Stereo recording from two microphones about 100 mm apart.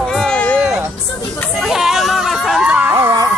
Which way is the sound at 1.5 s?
5° right (ahead or behind).